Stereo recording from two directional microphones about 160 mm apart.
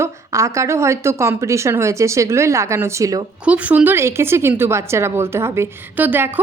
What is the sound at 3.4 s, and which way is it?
A woman's voice, 10° right (ahead or behind).